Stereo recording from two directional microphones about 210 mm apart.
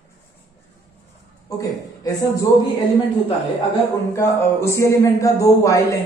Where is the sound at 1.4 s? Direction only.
15° left (ahead or behind).